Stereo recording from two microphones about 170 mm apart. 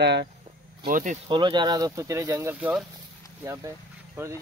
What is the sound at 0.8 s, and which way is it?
Speech, 50° right (ahead or behind).